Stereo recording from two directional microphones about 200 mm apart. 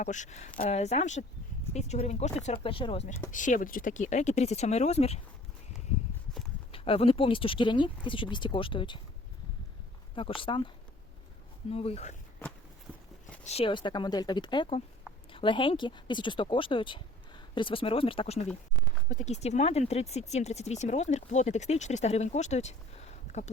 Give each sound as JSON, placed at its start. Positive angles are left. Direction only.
{"t": 0.0, "sound": "speech", "side_deg": 35}
{"t": 3.3, "sound": "speech", "side_deg": 40}
{"t": 6.7, "sound": "speech", "side_deg": 30}
{"t": 10.2, "sound": "speech", "side_deg": 25}
{"t": 11.7, "sound": "speech", "side_deg": 30}
{"t": 13.4, "sound": "speech", "side_deg": 30}